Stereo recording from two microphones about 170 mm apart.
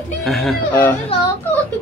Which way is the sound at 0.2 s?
Centre (ahead or behind).